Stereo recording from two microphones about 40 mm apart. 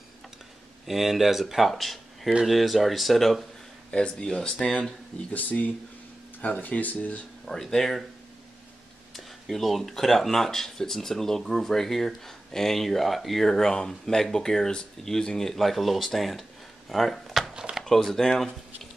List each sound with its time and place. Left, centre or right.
0.8 s speech: centre
3.9 s speech: left
4.3 s speech: centre
5.3 s speech: left
7.4 s speech: centre
9.1 s speech: centre
15.6 s speech: centre
16.9 s a sound: centre
17.7 s a sound: right
18.1 s speech: centre